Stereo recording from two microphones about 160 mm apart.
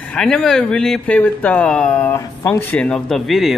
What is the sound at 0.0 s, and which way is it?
Speech, 5° left (ahead or behind).